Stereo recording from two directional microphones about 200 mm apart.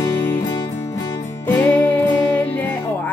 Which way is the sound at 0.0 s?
15° left (ahead or behind).